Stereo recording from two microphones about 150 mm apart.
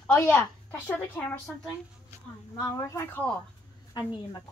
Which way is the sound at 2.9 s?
15° left (ahead or behind).